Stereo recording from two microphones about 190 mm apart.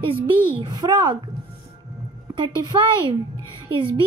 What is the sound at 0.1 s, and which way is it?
A child's voice, 25° right (ahead or behind).